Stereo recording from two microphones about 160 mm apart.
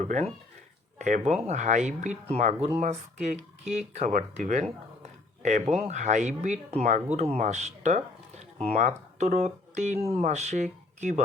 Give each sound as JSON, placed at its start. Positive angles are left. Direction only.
{"t": 0.0, "sound": "speech", "side_deg": -45}